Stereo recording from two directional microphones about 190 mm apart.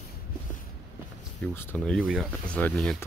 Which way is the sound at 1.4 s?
10° left (ahead or behind).